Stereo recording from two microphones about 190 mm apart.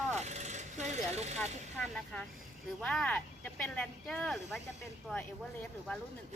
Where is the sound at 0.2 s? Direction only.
35° right (ahead or behind).